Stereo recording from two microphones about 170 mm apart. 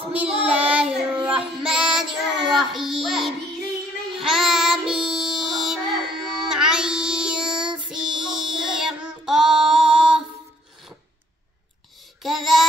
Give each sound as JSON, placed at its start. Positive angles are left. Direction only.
{"t": 0.1, "sound": "child singing", "side_deg": -10}
{"t": 12.2, "sound": "child singing", "side_deg": 0}